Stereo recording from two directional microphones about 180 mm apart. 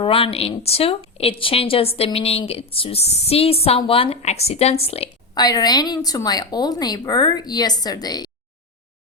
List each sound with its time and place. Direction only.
0.0 s a woman's voice: 30° left (ahead or behind)
5.3 s a woman's voice: 20° left (ahead or behind)